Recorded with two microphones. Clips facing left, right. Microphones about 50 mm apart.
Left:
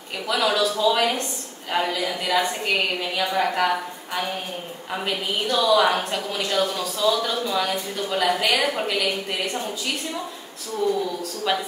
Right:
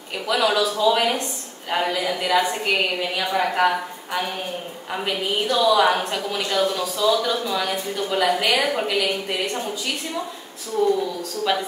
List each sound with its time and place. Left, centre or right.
0.3 s a woman's voice: centre
10.8 s speech: centre
11.5 s a woman's voice: centre